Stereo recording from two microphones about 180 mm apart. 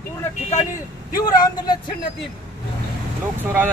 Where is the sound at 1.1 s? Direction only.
20° left (ahead or behind).